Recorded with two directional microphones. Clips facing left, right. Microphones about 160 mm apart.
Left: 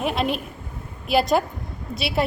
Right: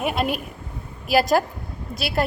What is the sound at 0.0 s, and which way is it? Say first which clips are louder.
A woman's voice: even; 5° right (ahead or behind).